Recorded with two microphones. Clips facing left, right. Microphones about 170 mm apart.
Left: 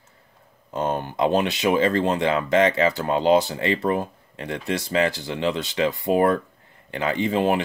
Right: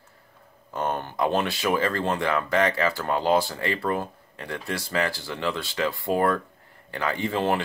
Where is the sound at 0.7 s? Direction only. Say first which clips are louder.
Left 3 dB; 15° left (ahead or behind).